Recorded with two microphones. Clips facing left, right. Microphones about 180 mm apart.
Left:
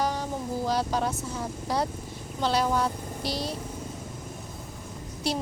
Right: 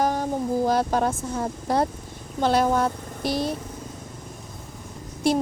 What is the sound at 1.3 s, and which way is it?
A woman's voice, 50° right (ahead or behind).